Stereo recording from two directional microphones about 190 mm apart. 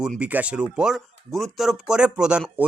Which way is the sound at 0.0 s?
5° right (ahead or behind).